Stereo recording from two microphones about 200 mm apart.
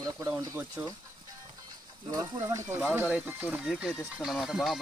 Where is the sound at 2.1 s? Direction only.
15° right (ahead or behind).